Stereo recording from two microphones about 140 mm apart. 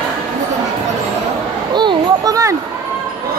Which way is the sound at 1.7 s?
35° right (ahead or behind).